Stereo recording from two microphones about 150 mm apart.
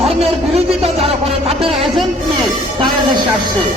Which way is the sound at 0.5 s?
45° right (ahead or behind).